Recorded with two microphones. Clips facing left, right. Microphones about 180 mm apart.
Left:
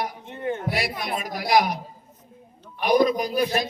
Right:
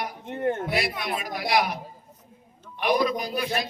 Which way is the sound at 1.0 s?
45° left (ahead or behind).